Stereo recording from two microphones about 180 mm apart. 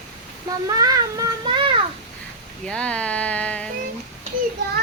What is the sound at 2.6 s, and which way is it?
Speech, 5° left (ahead or behind).